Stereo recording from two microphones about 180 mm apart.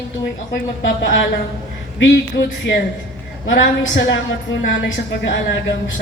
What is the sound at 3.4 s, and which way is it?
Speech, 90° left.